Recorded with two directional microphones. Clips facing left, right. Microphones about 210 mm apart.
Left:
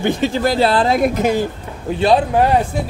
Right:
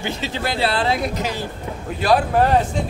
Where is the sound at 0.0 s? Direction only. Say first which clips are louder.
Left 9 dB; 50° left (ahead or behind).